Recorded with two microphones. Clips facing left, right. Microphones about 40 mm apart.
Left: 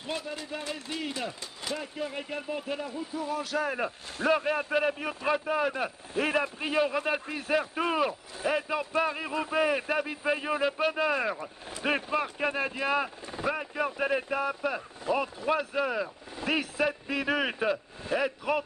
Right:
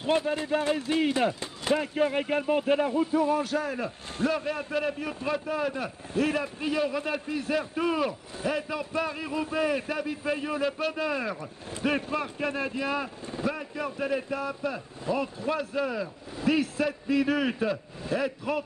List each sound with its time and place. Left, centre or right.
0.0 s speech: right
3.5 s speech: centre
4.3 s speech: centre